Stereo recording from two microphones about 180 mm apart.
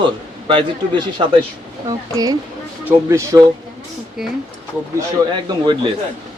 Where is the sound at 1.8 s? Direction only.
20° right (ahead or behind).